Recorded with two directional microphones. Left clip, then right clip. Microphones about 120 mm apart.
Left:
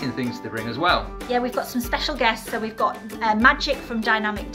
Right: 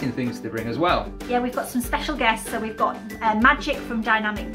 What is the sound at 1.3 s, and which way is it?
Speech, 30° left (ahead or behind).